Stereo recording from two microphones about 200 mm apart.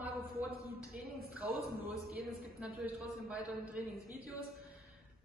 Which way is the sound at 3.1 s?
5° right (ahead or behind).